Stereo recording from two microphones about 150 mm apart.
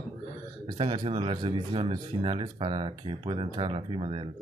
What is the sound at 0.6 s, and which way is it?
Speech, 35° right (ahead or behind).